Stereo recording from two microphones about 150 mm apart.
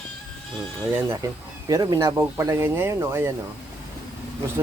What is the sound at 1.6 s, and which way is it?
A man's voice, 25° right (ahead or behind).